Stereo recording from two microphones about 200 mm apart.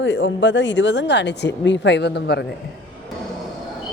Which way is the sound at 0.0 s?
65° left (ahead or behind).